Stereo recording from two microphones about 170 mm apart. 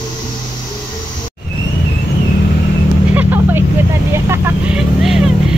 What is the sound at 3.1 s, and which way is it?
Vehicle, 10° right (ahead or behind).